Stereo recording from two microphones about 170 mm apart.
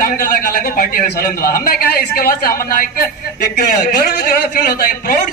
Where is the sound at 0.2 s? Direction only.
55° left (ahead or behind).